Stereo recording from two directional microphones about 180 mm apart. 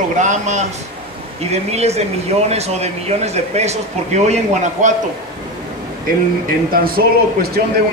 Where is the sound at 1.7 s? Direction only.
35° right (ahead or behind).